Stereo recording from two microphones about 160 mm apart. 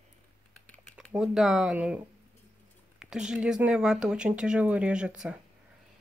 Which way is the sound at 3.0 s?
5° right (ahead or behind).